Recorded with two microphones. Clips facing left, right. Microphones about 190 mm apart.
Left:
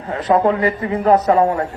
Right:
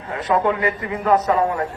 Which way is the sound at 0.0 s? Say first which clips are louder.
Left 4 dB; 30° left (ahead or behind).